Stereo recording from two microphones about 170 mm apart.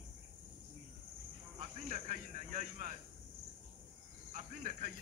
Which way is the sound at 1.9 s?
45° right (ahead or behind).